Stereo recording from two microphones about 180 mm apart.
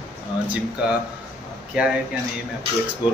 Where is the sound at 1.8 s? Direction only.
10° right (ahead or behind).